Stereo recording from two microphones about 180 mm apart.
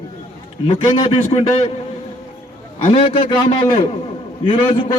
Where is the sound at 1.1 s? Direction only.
35° left (ahead or behind).